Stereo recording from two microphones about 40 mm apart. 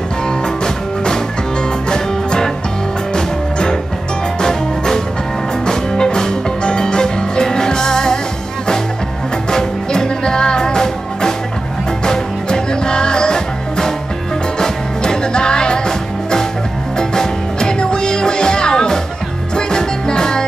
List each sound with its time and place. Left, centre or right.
1.9 s music: centre
9.5 s music: centre
17.1 s music: centre